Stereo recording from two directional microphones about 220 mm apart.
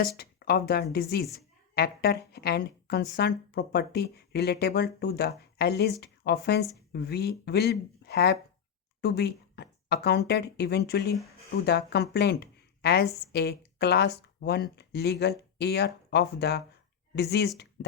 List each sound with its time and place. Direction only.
0.2 s a woman's voice: 45° left (ahead or behind)